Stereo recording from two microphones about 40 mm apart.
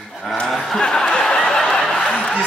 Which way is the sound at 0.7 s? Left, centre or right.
Left.